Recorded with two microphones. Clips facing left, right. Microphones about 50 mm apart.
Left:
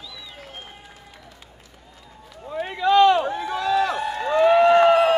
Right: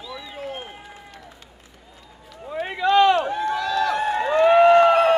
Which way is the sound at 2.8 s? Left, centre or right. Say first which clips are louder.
Left 1 dB; centre.